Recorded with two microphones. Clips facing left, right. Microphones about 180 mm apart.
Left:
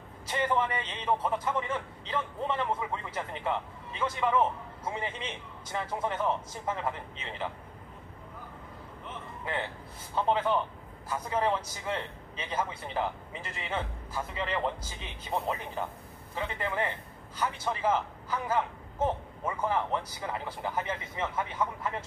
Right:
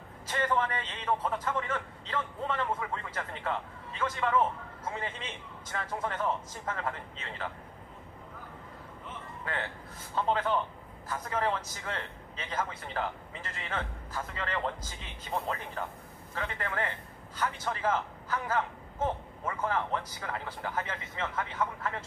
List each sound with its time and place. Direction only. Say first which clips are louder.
0.3 s a man's voice: left 1 dB; 15° left (ahead or behind)
9.4 s a man's voice: left 2 dB; 15° left (ahead or behind)